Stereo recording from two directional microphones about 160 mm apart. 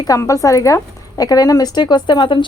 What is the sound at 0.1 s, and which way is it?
A woman's voice, 20° left (ahead or behind).